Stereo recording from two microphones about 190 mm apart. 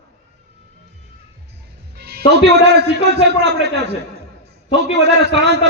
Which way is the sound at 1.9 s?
55° right (ahead or behind).